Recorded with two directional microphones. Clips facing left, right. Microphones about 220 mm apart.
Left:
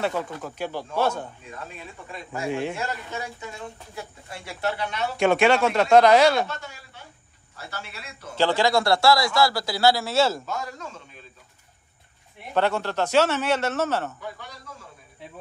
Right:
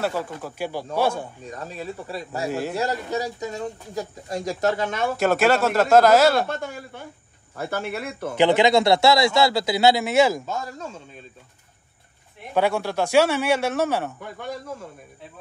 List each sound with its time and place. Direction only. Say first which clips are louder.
0.0 s speech: right 1 dB; 5° right (ahead or behind)
1.4 s speech: right 6 dB; 40° right (ahead or behind)
5.1 s speech: left 1 dB; 5° right (ahead or behind)
6.4 s speech: right 5 dB; 55° right (ahead or behind)
8.4 s speech: right 4 dB; 20° right (ahead or behind)
12.5 s speech: right 2 dB; 10° right (ahead or behind)